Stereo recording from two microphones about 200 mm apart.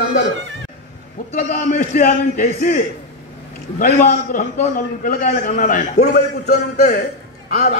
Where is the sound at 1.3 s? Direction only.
40° left (ahead or behind).